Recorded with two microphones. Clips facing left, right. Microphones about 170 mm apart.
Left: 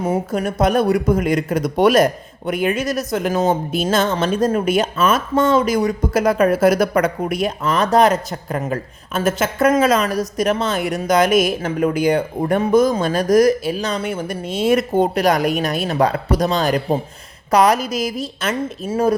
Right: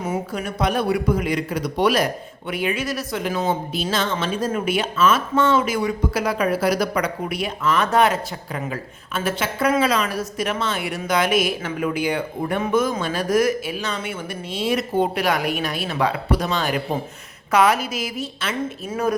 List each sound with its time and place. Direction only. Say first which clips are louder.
0.0 s a woman's voice: left 6 dB; 40° left (ahead or behind)